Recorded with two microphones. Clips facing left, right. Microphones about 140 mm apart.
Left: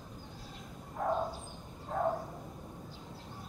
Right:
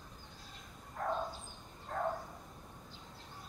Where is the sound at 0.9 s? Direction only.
10° left (ahead or behind).